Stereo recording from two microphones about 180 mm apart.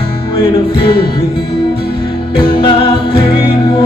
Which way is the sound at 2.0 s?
25° left (ahead or behind).